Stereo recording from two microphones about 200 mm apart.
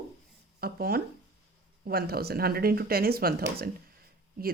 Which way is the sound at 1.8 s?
50° right (ahead or behind).